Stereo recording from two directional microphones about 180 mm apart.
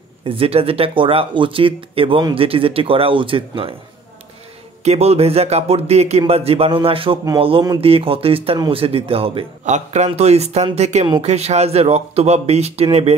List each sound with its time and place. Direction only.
0.2 s speech: 30° right (ahead or behind)
4.8 s a man's voice: 35° right (ahead or behind)